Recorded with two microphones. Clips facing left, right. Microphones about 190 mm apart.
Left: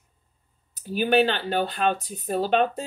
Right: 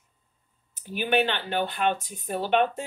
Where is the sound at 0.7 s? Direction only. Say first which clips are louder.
Left 4 dB; 40° left (ahead or behind).